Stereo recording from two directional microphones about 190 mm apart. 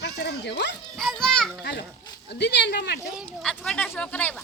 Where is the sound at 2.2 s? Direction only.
65° left (ahead or behind).